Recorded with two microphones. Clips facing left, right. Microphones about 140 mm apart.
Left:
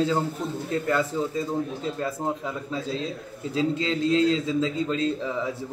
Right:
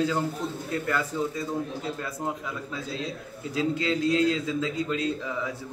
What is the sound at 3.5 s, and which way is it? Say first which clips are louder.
A man's voice: left 1 dB; 30° left (ahead or behind).